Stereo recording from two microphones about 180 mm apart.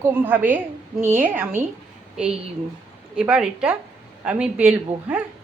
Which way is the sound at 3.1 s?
5° right (ahead or behind).